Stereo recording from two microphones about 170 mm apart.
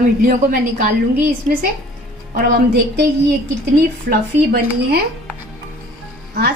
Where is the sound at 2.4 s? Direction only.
65° right (ahead or behind).